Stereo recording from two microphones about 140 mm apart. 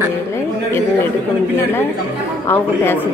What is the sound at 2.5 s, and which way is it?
Speech, 15° left (ahead or behind).